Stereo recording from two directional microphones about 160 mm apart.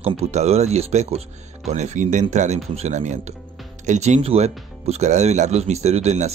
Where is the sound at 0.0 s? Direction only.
40° right (ahead or behind).